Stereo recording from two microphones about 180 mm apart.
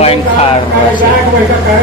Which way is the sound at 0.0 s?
35° left (ahead or behind).